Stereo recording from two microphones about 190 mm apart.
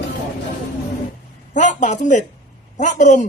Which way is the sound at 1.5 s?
40° left (ahead or behind).